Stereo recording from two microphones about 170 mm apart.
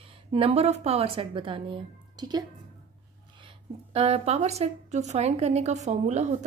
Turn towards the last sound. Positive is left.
turn(degrees=-40)  # may be behind; listen again after turning